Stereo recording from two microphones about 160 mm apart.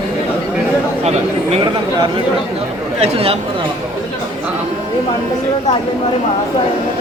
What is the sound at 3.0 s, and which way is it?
Speech, 35° right (ahead or behind).